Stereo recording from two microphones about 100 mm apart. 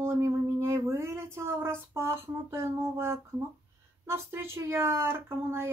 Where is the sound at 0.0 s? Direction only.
25° right (ahead or behind).